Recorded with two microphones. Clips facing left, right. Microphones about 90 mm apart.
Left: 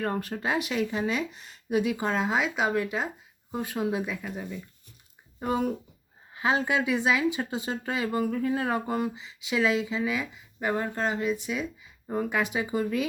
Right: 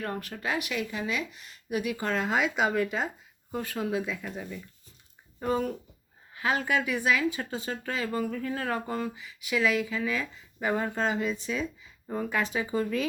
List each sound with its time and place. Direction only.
0.0 s speech: 35° left (ahead or behind); by 3.1 s 5° left (ahead or behind)
3.5 s speech: 15° left (ahead or behind)
10.0 s speech: 15° left (ahead or behind)
10.6 s speech: 5° left (ahead or behind)
12.0 s speech: 15° left (ahead or behind)